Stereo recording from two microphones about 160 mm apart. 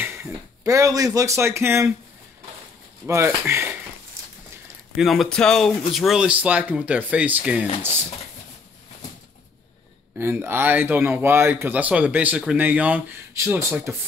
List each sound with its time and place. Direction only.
0.0 s speech: 15° right (ahead or behind)
3.1 s speech: 15° right (ahead or behind)
4.9 s speech: centre (ahead or behind)
10.1 s speech: 15° right (ahead or behind)